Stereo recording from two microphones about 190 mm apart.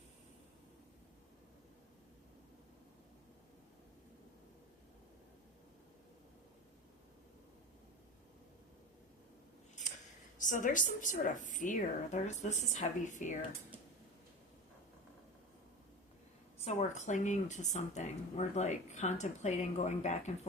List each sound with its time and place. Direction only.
10.3 s speech: 45° left (ahead or behind)
16.6 s speech: 40° left (ahead or behind)